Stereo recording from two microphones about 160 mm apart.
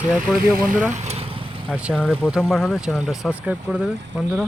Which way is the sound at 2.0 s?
5° left (ahead or behind).